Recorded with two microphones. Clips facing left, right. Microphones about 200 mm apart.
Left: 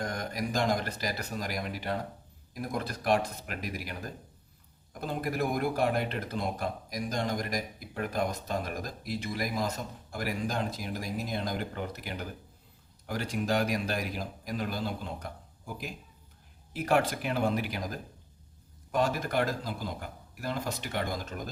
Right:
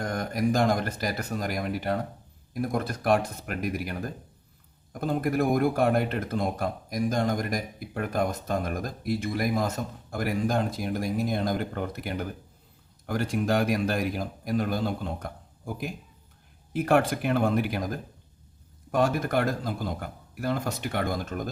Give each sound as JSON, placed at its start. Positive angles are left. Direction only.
{"t": 0.0, "sound": "speech", "side_deg": -50}
{"t": 18.9, "sound": "speech", "side_deg": -50}